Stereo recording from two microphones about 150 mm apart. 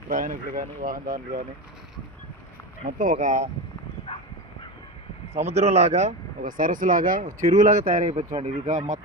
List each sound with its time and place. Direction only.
0.1 s speech: 65° right (ahead or behind)
3.0 s speech: 60° right (ahead or behind)
5.3 s speech: 45° right (ahead or behind)
8.0 s speech: 45° right (ahead or behind)